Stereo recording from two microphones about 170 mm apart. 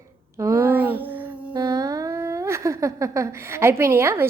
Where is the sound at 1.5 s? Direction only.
20° right (ahead or behind).